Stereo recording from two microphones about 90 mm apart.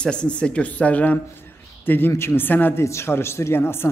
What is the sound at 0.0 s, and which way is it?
Speech, 10° left (ahead or behind).